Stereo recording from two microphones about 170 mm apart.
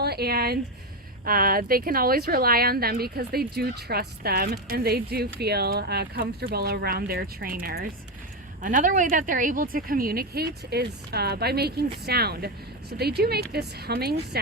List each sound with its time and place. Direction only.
0.0 s speech: 70° right (ahead or behind)
8.6 s a woman's voice: 50° right (ahead or behind); by 14.2 s 70° right (ahead or behind)